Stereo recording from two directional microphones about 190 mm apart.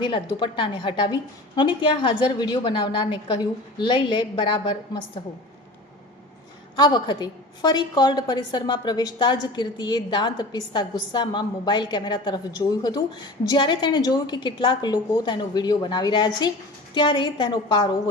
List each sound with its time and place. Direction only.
0.0 s a woman's voice: 25° left (ahead or behind)
6.7 s a woman's voice: 20° left (ahead or behind)
13.5 s a woman's voice: 25° left (ahead or behind)